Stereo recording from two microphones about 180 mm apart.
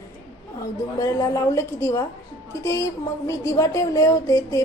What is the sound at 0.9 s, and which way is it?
A woman's voice, 20° left (ahead or behind).